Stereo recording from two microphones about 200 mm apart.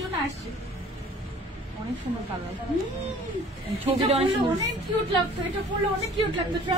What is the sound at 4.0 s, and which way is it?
Speech, 25° right (ahead or behind).